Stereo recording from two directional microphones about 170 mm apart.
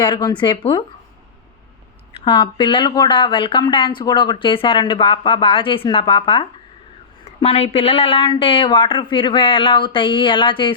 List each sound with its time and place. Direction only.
0.0 s speech: 25° left (ahead or behind)
2.2 s speech: 25° left (ahead or behind)